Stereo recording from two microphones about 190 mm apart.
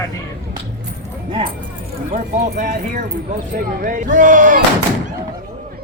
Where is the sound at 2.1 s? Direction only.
40° right (ahead or behind).